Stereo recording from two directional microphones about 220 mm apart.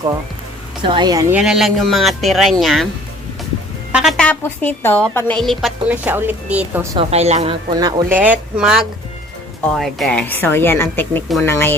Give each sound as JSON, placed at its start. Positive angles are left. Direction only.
{"t": 0.8, "sound": "speech", "side_deg": -20}
{"t": 1.4, "sound": "a woman's voice", "side_deg": -5}
{"t": 3.9, "sound": "a woman's voice", "side_deg": 0}
{"t": 6.9, "sound": "speech", "side_deg": -25}
{"t": 8.2, "sound": "a woman's voice", "side_deg": -5}